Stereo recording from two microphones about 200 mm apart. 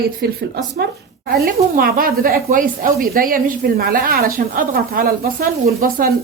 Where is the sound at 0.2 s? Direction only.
55° right (ahead or behind).